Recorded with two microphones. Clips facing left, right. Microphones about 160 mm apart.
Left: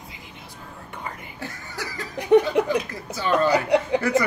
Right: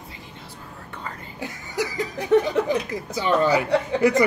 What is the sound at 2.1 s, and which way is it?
Speech, 15° left (ahead or behind).